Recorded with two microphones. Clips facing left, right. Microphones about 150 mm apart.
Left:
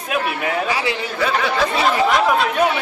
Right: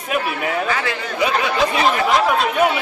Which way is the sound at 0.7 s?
15° left (ahead or behind).